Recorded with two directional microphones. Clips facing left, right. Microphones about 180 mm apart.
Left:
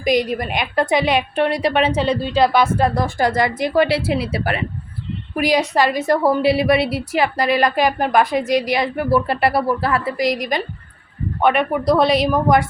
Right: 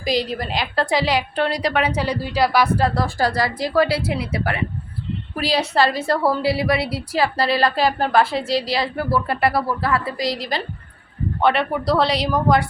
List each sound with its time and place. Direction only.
0.0 s a woman's voice: 20° left (ahead or behind)
5.4 s a woman's voice: 15° left (ahead or behind)